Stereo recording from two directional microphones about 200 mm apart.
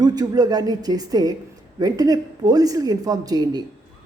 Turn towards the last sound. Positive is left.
turn(degrees=-20)  # may be behind; listen again after turning